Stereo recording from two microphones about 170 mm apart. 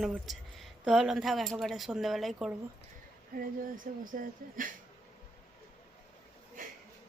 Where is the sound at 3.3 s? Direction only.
50° right (ahead or behind).